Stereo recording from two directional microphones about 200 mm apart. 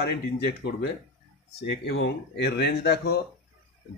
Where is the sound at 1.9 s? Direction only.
60° left (ahead or behind).